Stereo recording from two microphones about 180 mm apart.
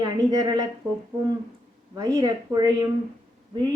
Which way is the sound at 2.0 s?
20° right (ahead or behind).